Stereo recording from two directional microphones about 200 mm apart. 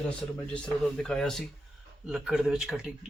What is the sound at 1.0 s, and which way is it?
Speech, 5° left (ahead or behind).